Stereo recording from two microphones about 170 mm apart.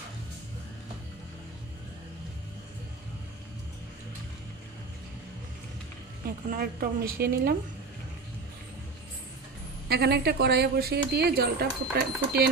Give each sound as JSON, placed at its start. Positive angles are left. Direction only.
{"t": 6.2, "sound": "a woman's voice", "side_deg": -60}
{"t": 9.8, "sound": "a woman's voice", "side_deg": -70}